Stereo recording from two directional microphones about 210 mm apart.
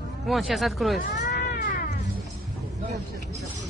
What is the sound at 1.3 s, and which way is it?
Cat, 45° left (ahead or behind).